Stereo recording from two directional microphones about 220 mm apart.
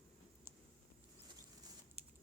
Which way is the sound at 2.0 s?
25° right (ahead or behind).